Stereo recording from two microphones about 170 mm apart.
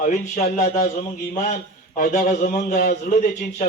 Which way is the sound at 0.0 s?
40° left (ahead or behind).